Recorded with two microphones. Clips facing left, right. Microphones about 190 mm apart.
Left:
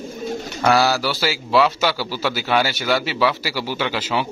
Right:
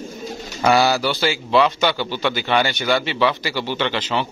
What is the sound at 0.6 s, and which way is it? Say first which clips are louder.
A man's voice: right 1 dB; centre (ahead or behind).